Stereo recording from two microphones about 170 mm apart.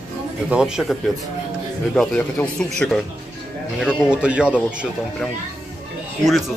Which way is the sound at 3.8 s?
5° right (ahead or behind).